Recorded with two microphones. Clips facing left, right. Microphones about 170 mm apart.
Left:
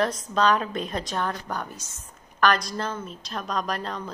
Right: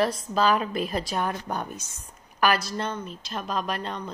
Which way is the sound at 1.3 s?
20° right (ahead or behind).